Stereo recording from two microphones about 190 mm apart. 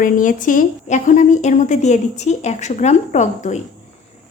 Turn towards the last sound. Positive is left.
turn(degrees=40)  # may be behind; listen again after turning